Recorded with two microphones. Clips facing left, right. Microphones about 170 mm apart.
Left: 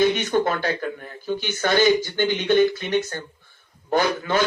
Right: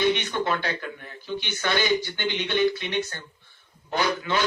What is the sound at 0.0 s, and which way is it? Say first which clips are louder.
A man's voice: left 5 dB; 45° left (ahead or behind).